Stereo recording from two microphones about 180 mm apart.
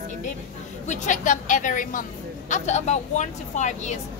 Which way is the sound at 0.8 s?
45° left (ahead or behind).